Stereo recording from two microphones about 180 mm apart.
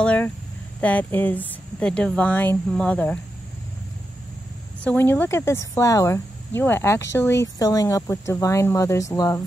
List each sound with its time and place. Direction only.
0.0 s speech: 10° left (ahead or behind)
4.8 s speech: 10° left (ahead or behind)